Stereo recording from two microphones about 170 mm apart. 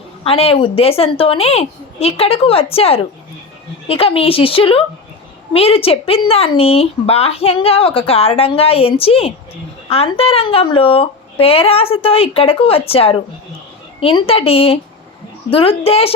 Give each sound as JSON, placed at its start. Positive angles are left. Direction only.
{"t": 0.3, "sound": "speech", "side_deg": 35}